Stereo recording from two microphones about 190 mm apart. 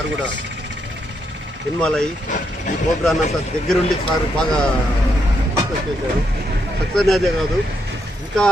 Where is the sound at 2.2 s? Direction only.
40° left (ahead or behind).